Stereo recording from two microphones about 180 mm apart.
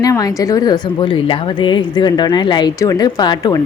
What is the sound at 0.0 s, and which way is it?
A woman's voice, 20° left (ahead or behind).